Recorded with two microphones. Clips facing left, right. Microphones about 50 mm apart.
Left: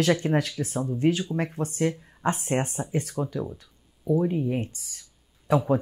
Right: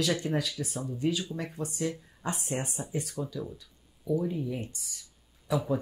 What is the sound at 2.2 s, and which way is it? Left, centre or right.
Speech, left.